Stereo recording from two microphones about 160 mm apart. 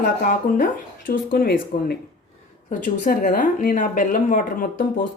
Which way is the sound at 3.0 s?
55° left (ahead or behind).